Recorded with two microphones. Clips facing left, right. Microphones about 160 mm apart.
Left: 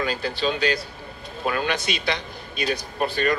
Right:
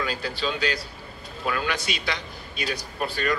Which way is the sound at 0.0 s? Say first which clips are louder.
Left 4 dB; 25° left (ahead or behind).